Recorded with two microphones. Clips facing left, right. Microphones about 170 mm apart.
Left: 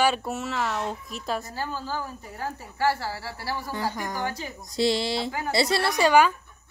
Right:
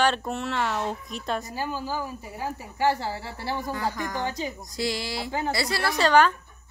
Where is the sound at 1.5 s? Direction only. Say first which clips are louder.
Right 1 dB; 15° right (ahead or behind).